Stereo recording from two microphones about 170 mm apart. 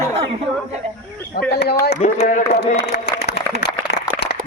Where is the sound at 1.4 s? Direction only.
65° left (ahead or behind).